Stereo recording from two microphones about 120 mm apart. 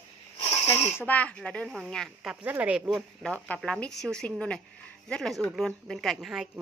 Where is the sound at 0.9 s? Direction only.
15° left (ahead or behind).